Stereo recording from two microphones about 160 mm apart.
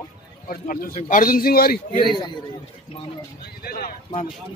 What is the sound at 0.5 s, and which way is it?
Speech, 65° left (ahead or behind).